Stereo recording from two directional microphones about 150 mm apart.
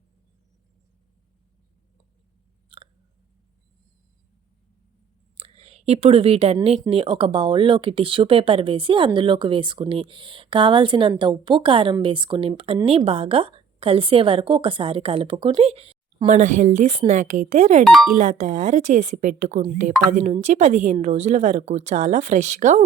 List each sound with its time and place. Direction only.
2.6 s hiccup: 35° right (ahead or behind)
5.4 s whispering: 45° right (ahead or behind)
6.9 s a woman's voice: 35° right (ahead or behind); by 17.8 s 50° right (ahead or behind)
17.8 s speech: centre (ahead or behind)
18.1 s a woman's voice: 55° right (ahead or behind)